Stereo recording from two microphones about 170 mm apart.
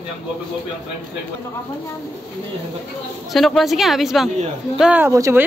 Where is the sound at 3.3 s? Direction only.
Centre (ahead or behind); by 5.4 s 15° right (ahead or behind).